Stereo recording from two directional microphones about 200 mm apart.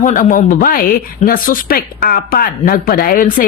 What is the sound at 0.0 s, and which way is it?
Speech, 40° left (ahead or behind).